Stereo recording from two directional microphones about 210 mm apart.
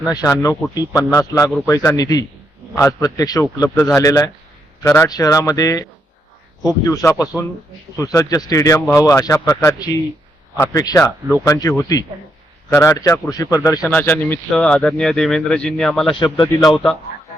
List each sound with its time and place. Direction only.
0.1 s speech: 15° left (ahead or behind); by 16.1 s centre (ahead or behind)
16.1 s speech: 20° left (ahead or behind)
16.6 s speech: centre (ahead or behind)